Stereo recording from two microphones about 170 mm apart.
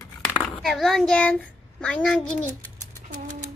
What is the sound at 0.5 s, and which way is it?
A child's voice, centre (ahead or behind).